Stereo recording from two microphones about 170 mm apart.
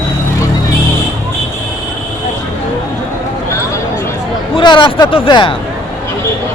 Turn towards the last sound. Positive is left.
turn(degrees=30)  # may be behind; listen again after turning